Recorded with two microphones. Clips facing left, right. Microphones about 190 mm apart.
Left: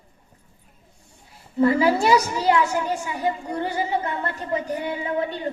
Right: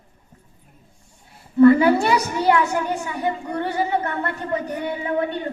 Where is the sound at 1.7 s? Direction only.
60° right (ahead or behind).